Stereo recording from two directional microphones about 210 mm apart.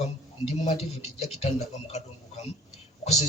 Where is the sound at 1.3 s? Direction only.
30° left (ahead or behind).